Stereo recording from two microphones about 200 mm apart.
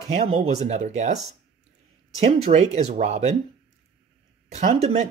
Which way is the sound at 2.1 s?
30° right (ahead or behind).